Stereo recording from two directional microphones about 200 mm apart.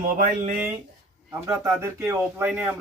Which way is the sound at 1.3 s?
Centre (ahead or behind).